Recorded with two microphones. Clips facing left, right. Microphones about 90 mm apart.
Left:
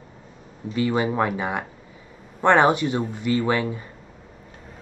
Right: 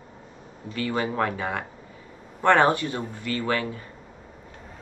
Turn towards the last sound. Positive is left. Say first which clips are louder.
# left 4 dB
turn(degrees=20)  # may be behind; listen again after turning